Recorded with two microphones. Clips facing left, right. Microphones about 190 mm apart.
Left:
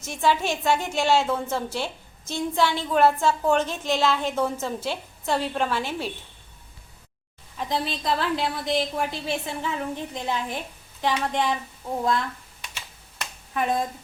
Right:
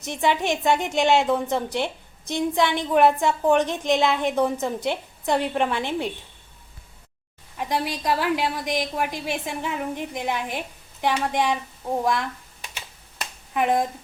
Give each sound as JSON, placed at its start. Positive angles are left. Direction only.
{"t": 0.0, "sound": "a woman's voice", "side_deg": -20}
{"t": 7.6, "sound": "a woman's voice", "side_deg": -15}
{"t": 13.5, "sound": "speech", "side_deg": -15}